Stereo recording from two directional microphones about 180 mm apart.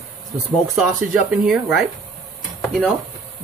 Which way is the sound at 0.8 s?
5° right (ahead or behind).